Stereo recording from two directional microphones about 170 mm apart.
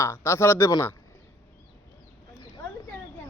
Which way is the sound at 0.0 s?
15° left (ahead or behind).